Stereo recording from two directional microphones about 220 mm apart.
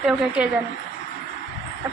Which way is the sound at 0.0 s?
5° right (ahead or behind).